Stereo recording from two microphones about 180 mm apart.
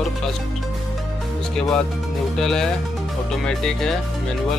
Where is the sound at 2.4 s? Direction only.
5° left (ahead or behind).